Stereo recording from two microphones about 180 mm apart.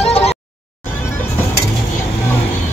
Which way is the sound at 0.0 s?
35° left (ahead or behind).